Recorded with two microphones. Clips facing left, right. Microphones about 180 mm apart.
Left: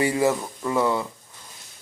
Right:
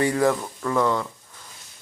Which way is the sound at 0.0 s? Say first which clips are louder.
Right 1 dB; 5° left (ahead or behind).